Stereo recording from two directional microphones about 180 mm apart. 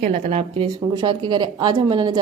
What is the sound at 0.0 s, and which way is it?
Speech, 40° right (ahead or behind).